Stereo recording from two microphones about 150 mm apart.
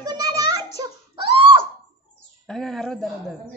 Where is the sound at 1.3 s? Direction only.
35° right (ahead or behind).